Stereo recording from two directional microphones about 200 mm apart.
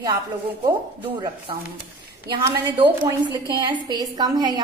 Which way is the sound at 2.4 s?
20° right (ahead or behind).